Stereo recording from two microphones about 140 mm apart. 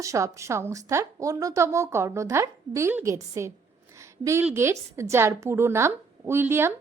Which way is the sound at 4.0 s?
20° right (ahead or behind).